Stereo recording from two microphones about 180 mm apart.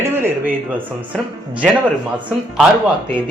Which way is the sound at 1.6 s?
Centre (ahead or behind).